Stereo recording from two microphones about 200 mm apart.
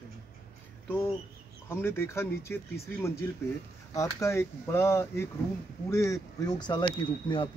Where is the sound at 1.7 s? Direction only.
10° left (ahead or behind).